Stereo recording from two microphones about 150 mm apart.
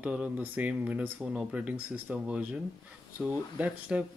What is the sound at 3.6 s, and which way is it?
Speech, 10° right (ahead or behind).